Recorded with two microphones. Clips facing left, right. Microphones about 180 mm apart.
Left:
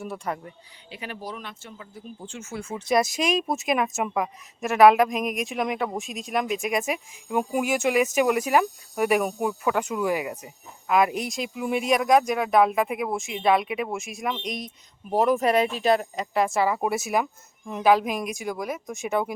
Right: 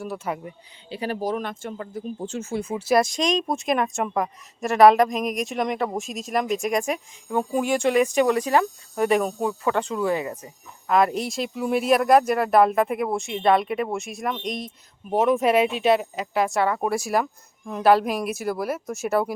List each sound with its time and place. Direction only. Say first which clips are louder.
0.0 s speech: right 2 dB; centre (ahead or behind)
0.9 s speech: right 9 dB; 35° right (ahead or behind)
2.6 s speech: right 4 dB; 15° right (ahead or behind)
2.8 s speech: right 1 dB; centre (ahead or behind)